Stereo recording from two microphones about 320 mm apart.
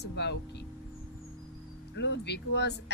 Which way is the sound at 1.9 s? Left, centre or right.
Left.